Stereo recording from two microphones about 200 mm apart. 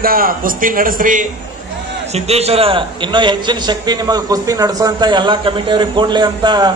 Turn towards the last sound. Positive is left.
turn(degrees=-20)  # may be behind; listen again after turning